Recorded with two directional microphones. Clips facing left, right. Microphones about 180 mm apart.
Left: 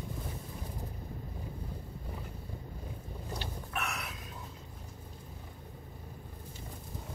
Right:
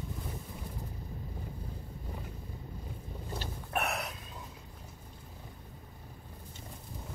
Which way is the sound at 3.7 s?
60° right (ahead or behind).